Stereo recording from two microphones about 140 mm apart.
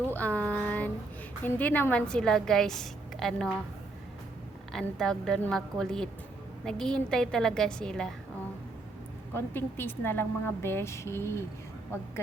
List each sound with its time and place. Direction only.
0.1 s a woman's voice: 10° left (ahead or behind)
4.7 s a woman's voice: 5° left (ahead or behind)
9.3 s a woman's voice: 15° left (ahead or behind)